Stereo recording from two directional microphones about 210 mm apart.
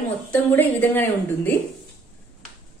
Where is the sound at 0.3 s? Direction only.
10° left (ahead or behind).